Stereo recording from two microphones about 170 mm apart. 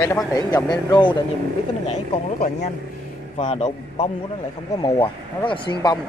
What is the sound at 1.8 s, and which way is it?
Speech, 40° left (ahead or behind).